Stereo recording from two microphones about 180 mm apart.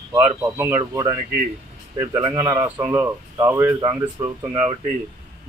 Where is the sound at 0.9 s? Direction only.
25° right (ahead or behind).